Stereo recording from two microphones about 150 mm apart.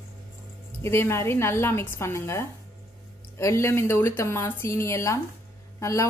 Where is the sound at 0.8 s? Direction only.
15° left (ahead or behind).